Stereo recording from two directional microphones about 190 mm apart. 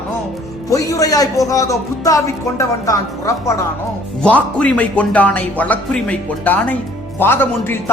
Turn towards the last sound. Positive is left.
turn(degrees=10)  # may be behind; listen again after turning